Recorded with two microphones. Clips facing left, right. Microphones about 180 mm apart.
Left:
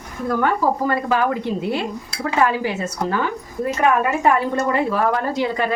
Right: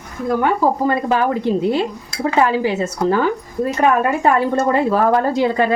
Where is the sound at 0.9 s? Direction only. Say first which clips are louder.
Right 2 dB; 25° right (ahead or behind).